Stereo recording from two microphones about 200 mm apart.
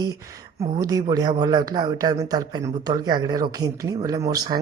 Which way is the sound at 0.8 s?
20° right (ahead or behind).